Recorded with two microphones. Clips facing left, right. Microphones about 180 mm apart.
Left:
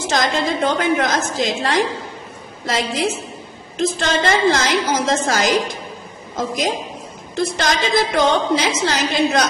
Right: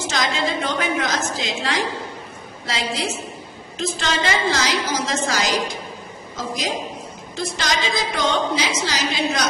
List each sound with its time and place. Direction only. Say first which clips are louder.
0.1 s a woman's voice: left 4 dB; 50° left (ahead or behind)